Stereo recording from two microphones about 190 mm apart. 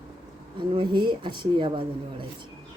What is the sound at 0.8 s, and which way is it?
Speech, 25° right (ahead or behind).